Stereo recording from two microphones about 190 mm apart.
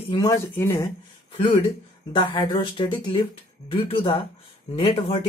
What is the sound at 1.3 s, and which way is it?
Speech, 30° left (ahead or behind).